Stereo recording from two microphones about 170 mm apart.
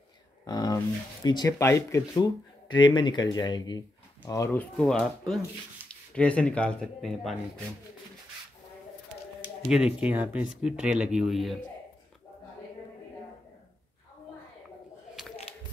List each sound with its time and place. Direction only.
0.5 s a sound: 25° left (ahead or behind)
1.2 s speech: 25° left (ahead or behind)
4.3 s speech: 15° left (ahead or behind)
9.7 s speech: 5° right (ahead or behind)